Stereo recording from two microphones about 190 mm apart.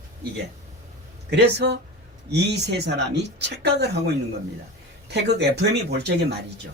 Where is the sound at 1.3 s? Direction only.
60° right (ahead or behind).